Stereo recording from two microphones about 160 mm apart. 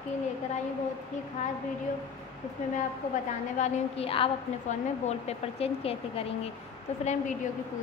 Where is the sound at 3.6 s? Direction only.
35° left (ahead or behind).